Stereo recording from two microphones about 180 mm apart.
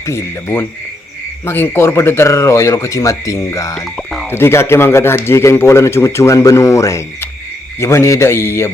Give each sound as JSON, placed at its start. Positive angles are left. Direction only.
{"t": 0.0, "sound": "speech", "side_deg": 15}
{"t": 3.8, "sound": "frog", "side_deg": 0}
{"t": 4.3, "sound": "speech", "side_deg": 15}